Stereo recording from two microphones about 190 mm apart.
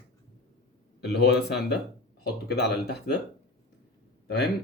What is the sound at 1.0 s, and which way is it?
A man's voice, 60° left (ahead or behind).